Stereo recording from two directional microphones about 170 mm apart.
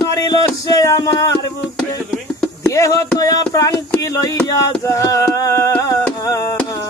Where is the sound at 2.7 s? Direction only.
20° left (ahead or behind).